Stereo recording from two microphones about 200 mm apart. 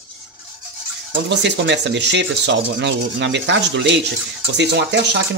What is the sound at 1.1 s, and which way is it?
Speech, 60° right (ahead or behind).